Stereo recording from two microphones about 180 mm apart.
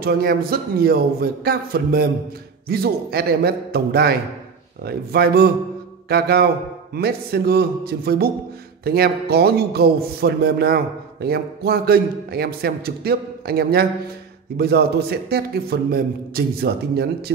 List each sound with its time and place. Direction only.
0.0 s a man's voice: 55° right (ahead or behind)